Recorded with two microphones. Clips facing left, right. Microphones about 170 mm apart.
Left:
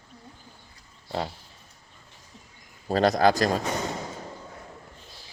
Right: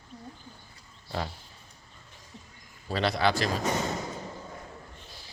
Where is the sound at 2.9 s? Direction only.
45° left (ahead or behind).